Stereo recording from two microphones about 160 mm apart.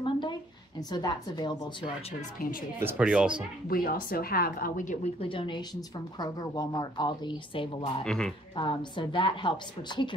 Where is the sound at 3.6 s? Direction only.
65° left (ahead or behind).